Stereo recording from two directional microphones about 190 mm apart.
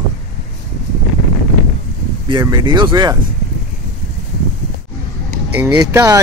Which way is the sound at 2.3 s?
25° right (ahead or behind).